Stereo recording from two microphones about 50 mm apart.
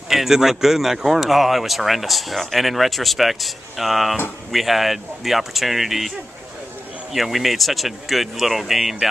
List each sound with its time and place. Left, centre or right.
0.1 s speech: centre